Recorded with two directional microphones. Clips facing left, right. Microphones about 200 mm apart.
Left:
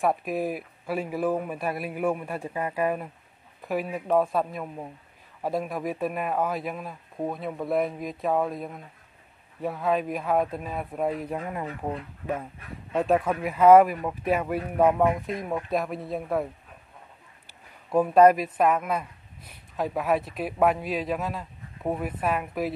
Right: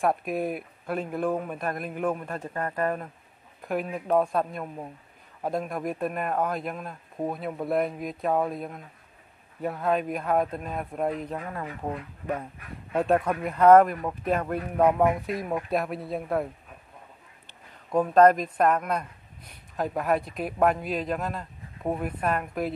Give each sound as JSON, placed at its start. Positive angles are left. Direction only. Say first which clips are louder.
{"t": 0.0, "sound": "a man's voice", "louder": "even", "side_deg": 0}
{"t": 11.3, "sound": "speech", "louder": "left 2 dB", "side_deg": 20}
{"t": 12.9, "sound": "speech", "louder": "even", "side_deg": 0}
{"t": 17.5, "sound": "speech", "louder": "left 1 dB", "side_deg": 10}